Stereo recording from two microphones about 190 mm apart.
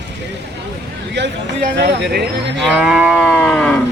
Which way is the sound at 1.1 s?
65° right (ahead or behind).